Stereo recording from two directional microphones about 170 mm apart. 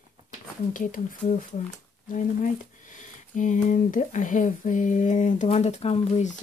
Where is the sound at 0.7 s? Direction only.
50° left (ahead or behind).